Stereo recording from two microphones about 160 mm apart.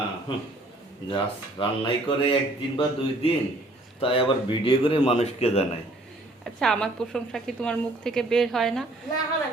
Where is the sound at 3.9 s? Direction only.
35° left (ahead or behind).